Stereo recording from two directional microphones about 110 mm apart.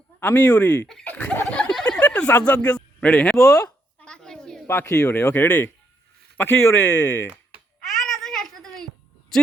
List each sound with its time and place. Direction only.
0.2 s speech: 15° left (ahead or behind)
1.5 s a sound: 10° left (ahead or behind)
4.6 s speech: 20° left (ahead or behind)
7.8 s babbling: centre (ahead or behind)
9.3 s speech: 5° left (ahead or behind)